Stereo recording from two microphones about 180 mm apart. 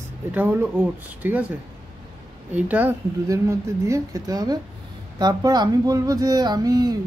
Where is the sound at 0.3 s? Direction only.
10° right (ahead or behind).